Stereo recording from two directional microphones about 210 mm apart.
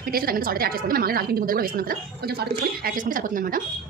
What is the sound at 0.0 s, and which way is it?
A woman's voice, 45° right (ahead or behind).